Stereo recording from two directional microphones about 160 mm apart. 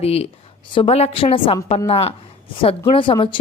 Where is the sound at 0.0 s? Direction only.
40° left (ahead or behind).